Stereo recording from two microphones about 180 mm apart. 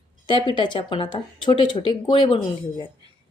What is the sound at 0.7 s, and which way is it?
Speech, 25° left (ahead or behind).